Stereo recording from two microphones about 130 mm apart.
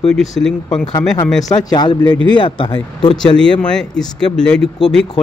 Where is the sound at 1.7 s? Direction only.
35° left (ahead or behind).